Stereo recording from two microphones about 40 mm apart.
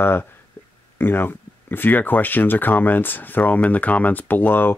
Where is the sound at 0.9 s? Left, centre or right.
Left.